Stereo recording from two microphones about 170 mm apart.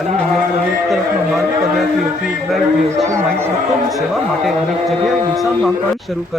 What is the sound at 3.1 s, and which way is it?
Speech, 15° right (ahead or behind).